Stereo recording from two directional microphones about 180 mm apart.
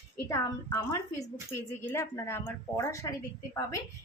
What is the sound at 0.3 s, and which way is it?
A woman's voice, 15° left (ahead or behind).